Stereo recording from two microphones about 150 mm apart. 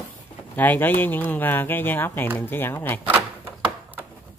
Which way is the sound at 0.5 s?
10° left (ahead or behind).